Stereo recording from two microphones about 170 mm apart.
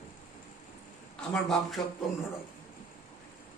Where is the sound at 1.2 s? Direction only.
Centre (ahead or behind).